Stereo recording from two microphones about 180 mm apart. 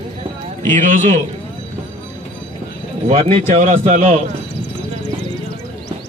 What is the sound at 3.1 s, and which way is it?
A man's voice, 45° right (ahead or behind).